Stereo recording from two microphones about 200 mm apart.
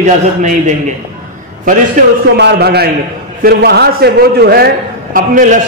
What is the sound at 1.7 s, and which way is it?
Speech, 45° right (ahead or behind).